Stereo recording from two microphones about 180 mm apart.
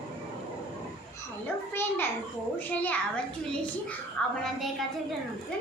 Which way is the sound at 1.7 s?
10° left (ahead or behind).